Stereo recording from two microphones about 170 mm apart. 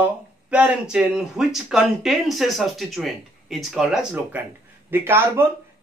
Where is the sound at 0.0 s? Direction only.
10° right (ahead or behind).